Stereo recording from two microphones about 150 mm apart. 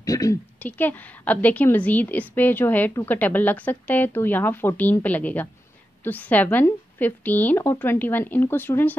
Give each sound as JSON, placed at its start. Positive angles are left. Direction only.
{"t": 0.0, "sound": "a woman's voice", "side_deg": 25}
{"t": 0.6, "sound": "a woman's voice", "side_deg": 10}